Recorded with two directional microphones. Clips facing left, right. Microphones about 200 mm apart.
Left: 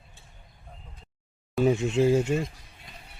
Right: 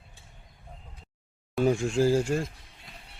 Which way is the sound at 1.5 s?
5° left (ahead or behind).